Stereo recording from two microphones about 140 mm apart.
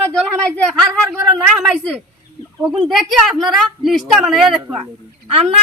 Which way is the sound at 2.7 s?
35° right (ahead or behind).